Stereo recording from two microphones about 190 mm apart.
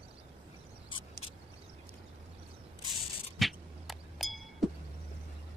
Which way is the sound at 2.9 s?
Centre (ahead or behind).